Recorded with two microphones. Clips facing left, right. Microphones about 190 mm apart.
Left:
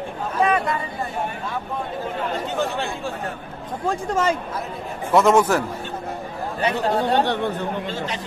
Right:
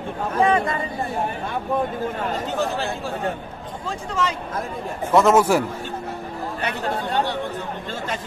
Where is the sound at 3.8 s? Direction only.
50° left (ahead or behind).